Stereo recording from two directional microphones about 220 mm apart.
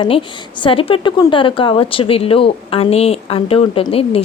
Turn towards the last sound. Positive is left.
turn(degrees=25)  # may be behind; listen again after turning